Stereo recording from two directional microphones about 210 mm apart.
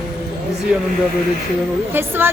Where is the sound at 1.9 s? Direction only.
10° right (ahead or behind).